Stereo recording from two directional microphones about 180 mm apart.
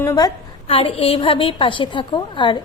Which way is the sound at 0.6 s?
30° left (ahead or behind).